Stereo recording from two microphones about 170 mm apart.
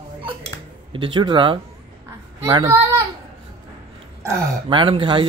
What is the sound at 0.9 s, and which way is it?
A child's voice, 30° right (ahead or behind).